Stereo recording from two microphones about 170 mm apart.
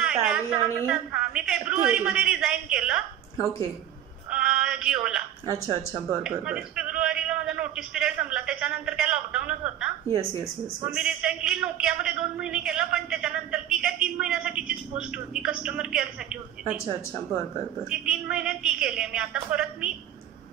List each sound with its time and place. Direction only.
0.0 s a man's voice: 5° right (ahead or behind)
4.3 s a sound: 5° right (ahead or behind)
6.2 s a man's voice: 5° right (ahead or behind)
10.1 s speech: 20° right (ahead or behind)
11.0 s a man's voice: 5° right (ahead or behind)
17.8 s a man's voice: 5° right (ahead or behind)